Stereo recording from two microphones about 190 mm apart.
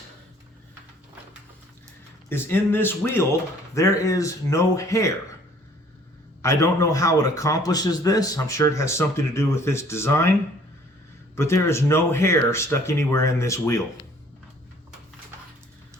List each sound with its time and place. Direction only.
2.3 s a man's voice: 10° left (ahead or behind)
6.4 s a man's voice: 15° left (ahead or behind)
11.3 s a man's voice: 15° left (ahead or behind)